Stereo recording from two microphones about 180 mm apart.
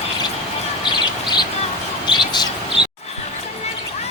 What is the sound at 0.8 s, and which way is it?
Bird, 25° left (ahead or behind).